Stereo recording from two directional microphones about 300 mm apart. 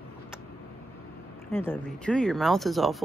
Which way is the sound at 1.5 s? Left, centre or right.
Centre.